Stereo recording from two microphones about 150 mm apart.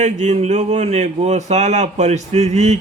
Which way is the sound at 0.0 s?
50° right (ahead or behind).